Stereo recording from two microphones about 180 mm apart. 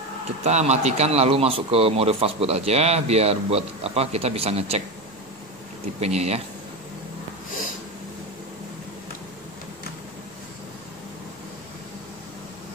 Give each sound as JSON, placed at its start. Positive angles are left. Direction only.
{"t": 0.4, "sound": "speech", "side_deg": -40}
{"t": 5.9, "sound": "speech", "side_deg": -35}